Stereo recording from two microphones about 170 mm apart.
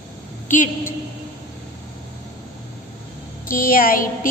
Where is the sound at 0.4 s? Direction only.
50° left (ahead or behind).